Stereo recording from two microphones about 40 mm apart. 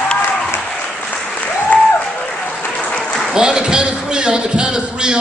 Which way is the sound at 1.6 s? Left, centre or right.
Left.